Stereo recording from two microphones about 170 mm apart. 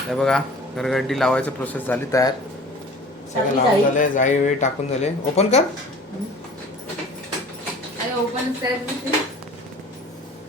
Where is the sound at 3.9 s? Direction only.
50° left (ahead or behind).